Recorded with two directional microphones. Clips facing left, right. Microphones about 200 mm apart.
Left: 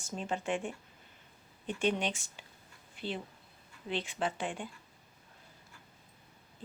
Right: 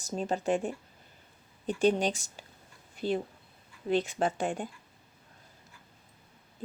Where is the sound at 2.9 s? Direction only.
40° right (ahead or behind).